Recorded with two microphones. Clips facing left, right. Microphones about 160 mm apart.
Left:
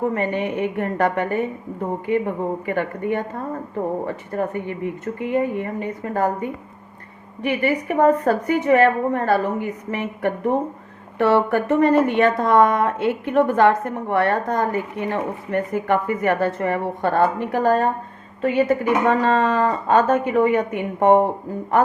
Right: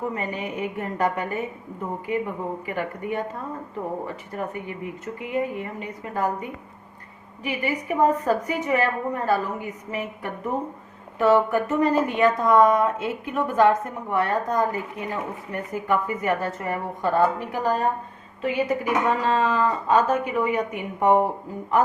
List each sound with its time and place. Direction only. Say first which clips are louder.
0.0 s a woman's voice: left 7 dB; 60° left (ahead or behind)
19.0 s a woman's voice: left 4 dB; 55° left (ahead or behind)